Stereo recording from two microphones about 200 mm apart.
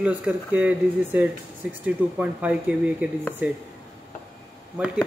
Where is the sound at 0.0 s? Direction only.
10° right (ahead or behind).